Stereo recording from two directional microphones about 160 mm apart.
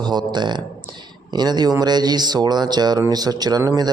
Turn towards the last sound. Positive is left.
turn(degrees=-20)  # may be behind; listen again after turning